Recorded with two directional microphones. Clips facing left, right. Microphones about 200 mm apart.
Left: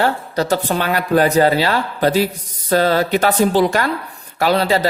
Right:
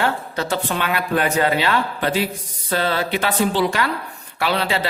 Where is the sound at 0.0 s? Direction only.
40° left (ahead or behind).